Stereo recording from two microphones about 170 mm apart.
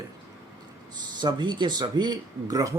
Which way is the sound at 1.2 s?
25° right (ahead or behind).